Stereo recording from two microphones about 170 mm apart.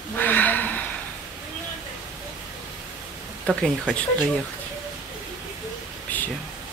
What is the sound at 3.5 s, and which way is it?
Speech, centre (ahead or behind).